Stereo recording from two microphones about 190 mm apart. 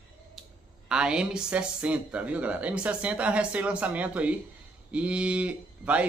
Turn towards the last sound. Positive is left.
turn(degrees=-5)  # may be behind; listen again after turning